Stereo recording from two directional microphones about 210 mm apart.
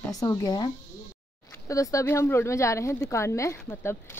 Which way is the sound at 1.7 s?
15° left (ahead or behind).